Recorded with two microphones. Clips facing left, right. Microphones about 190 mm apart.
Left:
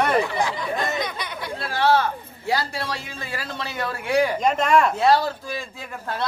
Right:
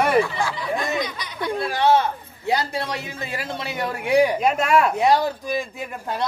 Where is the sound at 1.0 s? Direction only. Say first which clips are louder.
Even; 55° left (ahead or behind).